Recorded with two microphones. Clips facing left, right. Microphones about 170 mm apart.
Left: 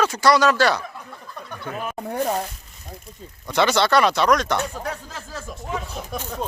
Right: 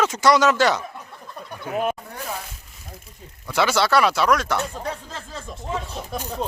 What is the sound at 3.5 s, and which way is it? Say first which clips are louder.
Speech: left 1 dB; 5° right (ahead or behind).